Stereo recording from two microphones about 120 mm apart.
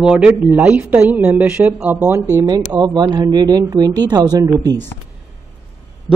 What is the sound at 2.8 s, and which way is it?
Speech, 35° right (ahead or behind).